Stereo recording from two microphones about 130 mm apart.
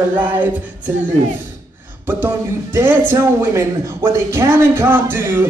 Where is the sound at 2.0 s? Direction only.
15° right (ahead or behind).